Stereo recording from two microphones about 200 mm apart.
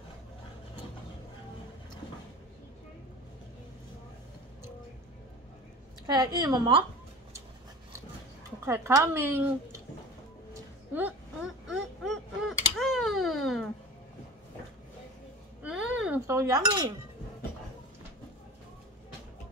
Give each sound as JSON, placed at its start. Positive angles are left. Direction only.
{"t": 6.0, "sound": "a woman's voice", "side_deg": -20}
{"t": 8.6, "sound": "speech", "side_deg": -15}
{"t": 10.9, "sound": "speech", "side_deg": -10}
{"t": 11.7, "sound": "mechanisms", "side_deg": 0}
{"t": 15.6, "sound": "a sound", "side_deg": -5}
{"t": 16.3, "sound": "cutlery", "side_deg": -15}